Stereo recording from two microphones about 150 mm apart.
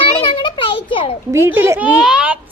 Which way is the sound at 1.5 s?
15° right (ahead or behind).